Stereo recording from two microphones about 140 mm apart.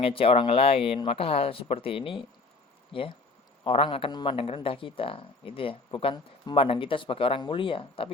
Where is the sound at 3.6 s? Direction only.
40° left (ahead or behind).